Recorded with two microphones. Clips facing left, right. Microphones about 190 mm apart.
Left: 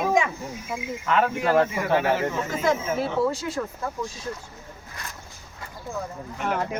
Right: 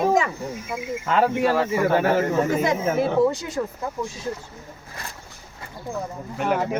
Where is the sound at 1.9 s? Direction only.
45° right (ahead or behind).